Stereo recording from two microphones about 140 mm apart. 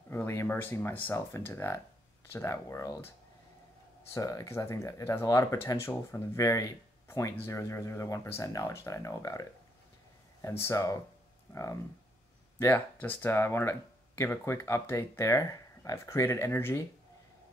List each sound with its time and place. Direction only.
0.1 s speech: 20° left (ahead or behind)
4.1 s speech: 25° left (ahead or behind)
10.6 s speech: 20° left (ahead or behind)